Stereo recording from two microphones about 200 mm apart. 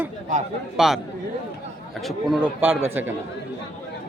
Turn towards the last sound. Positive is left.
turn(degrees=-10)  # may be behind; listen again after turning